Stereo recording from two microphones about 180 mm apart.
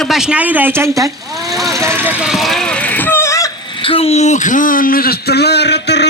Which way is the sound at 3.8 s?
35° left (ahead or behind).